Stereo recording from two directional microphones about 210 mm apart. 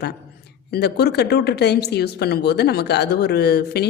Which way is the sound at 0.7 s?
50° left (ahead or behind).